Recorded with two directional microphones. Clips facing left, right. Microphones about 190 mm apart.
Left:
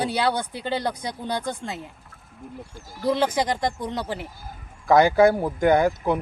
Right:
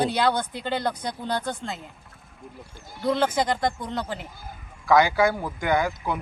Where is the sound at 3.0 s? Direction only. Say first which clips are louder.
Left 1 dB; 10° left (ahead or behind).